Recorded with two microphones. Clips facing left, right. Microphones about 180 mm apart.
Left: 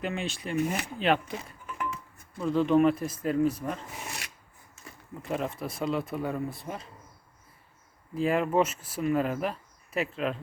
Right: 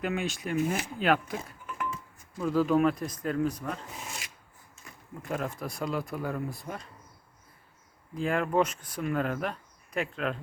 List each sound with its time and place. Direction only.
0.0 s speech: centre (ahead or behind)
1.5 s a sound: centre (ahead or behind)
2.4 s speech: 5° right (ahead or behind)
4.0 s filing: 70° left (ahead or behind)
5.2 s speech: centre (ahead or behind)
8.1 s speech: 5° left (ahead or behind)